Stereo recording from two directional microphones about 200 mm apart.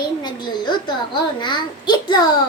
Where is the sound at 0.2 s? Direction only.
20° left (ahead or behind).